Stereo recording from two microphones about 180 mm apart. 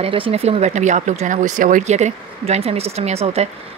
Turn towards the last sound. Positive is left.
turn(degrees=-35)  # may be behind; listen again after turning